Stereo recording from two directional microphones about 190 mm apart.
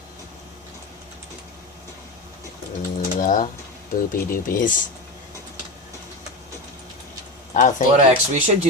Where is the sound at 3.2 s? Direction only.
45° left (ahead or behind).